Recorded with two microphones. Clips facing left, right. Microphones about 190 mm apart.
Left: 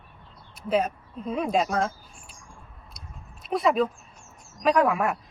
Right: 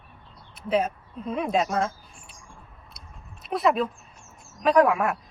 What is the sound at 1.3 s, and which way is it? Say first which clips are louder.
Speech: even; centre (ahead or behind).